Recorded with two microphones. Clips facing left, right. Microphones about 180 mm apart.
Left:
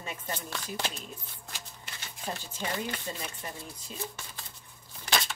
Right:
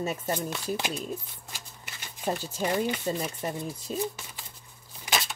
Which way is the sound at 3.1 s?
45° right (ahead or behind).